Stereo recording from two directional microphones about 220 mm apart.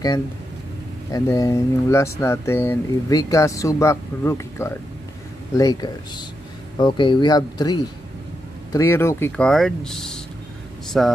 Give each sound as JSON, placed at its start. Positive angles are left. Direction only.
{"t": 1.1, "sound": "speech", "side_deg": 15}